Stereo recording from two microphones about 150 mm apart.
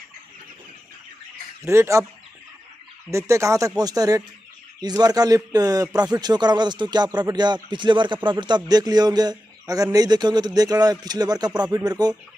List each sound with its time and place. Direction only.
1.6 s speech: 20° right (ahead or behind)
3.1 s speech: 20° right (ahead or behind)